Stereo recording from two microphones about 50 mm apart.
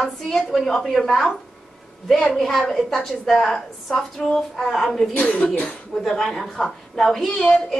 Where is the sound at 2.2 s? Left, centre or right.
Centre.